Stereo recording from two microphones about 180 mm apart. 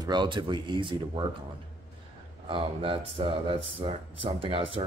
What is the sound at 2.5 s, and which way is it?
Speech, 30° right (ahead or behind).